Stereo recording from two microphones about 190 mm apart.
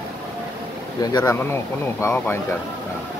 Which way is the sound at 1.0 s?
20° left (ahead or behind).